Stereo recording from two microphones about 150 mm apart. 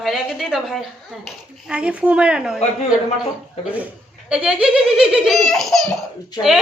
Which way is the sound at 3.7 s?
10° right (ahead or behind).